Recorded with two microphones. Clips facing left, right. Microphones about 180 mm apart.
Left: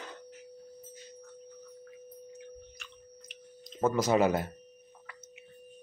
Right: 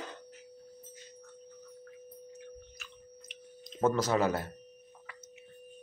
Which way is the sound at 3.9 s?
15° left (ahead or behind).